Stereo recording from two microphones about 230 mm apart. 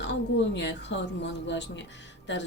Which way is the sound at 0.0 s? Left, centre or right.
Left.